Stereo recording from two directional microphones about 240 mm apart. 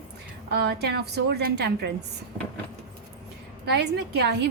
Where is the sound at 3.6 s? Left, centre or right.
Right.